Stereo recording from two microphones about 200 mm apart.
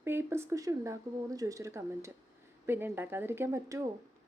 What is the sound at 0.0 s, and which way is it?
A woman's voice, 10° right (ahead or behind).